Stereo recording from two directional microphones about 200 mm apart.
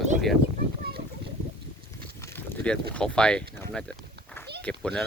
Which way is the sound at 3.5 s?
5° left (ahead or behind).